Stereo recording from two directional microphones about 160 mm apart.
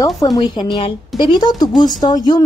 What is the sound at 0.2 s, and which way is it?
A woman's voice, 25° left (ahead or behind).